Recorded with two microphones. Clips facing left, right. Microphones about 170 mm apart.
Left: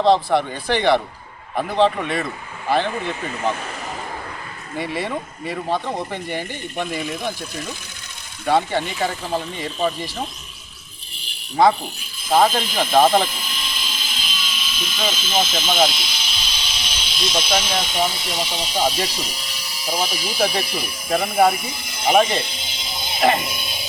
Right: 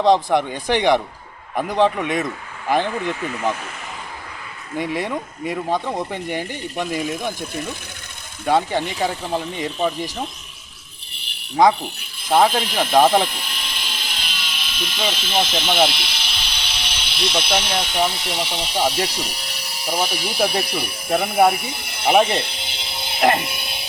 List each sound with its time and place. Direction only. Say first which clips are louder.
0.0 s speech: even; 15° right (ahead or behind)
4.9 s speech: right 1 dB; 10° right (ahead or behind)
9.0 s speech: right 1 dB; 15° right (ahead or behind)
11.1 s pulleys: even; 65° right (ahead or behind)
11.5 s speech: right 1 dB; 15° right (ahead or behind)
11.9 s a sound: even; 65° right (ahead or behind)
12.5 s speech: right 1 dB; 65° right (ahead or behind)
12.9 s speech: even; 15° right (ahead or behind)
13.2 s speech: even; 65° right (ahead or behind)
22.3 s music: right 1 dB; 65° right (ahead or behind)